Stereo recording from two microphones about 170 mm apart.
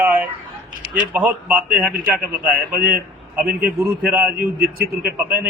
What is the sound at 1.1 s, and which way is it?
A man's voice, 10° right (ahead or behind).